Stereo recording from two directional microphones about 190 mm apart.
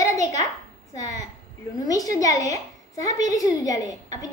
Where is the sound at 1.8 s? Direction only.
20° left (ahead or behind).